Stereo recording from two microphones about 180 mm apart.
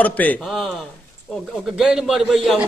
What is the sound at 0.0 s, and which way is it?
Speech, 10° left (ahead or behind).